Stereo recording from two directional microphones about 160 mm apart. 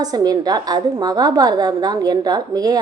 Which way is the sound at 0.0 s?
25° right (ahead or behind).